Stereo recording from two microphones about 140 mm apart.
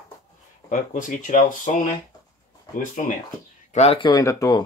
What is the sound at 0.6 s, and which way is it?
Speech, 70° left (ahead or behind).